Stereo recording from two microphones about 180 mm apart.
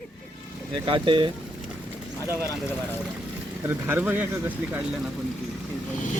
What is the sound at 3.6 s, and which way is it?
Speech, 10° right (ahead or behind).